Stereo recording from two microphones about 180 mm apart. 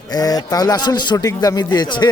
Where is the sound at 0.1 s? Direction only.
20° left (ahead or behind).